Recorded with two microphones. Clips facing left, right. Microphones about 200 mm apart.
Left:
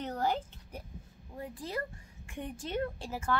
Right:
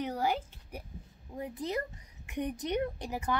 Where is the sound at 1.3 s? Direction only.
20° right (ahead or behind).